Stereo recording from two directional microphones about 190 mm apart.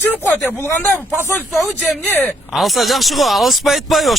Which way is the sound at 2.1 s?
10° left (ahead or behind).